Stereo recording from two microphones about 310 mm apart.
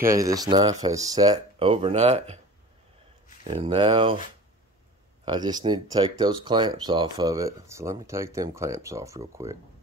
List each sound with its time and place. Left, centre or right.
0.0 s speech: centre
3.4 s speech: centre
5.2 s speech: centre